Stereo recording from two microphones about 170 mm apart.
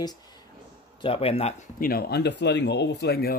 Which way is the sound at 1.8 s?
65° left (ahead or behind).